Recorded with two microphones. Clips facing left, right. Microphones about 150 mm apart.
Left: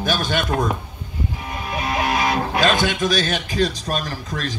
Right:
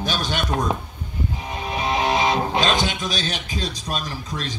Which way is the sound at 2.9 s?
50° left (ahead or behind).